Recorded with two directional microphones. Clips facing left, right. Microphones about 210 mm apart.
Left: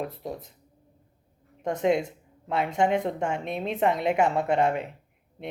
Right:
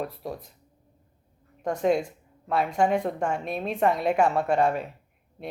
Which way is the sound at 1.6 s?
20° left (ahead or behind).